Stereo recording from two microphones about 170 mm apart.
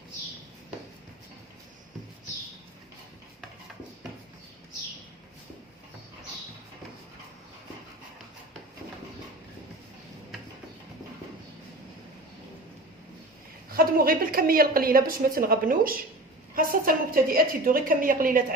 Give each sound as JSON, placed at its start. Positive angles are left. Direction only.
{"t": 13.7, "sound": "a woman's voice", "side_deg": -60}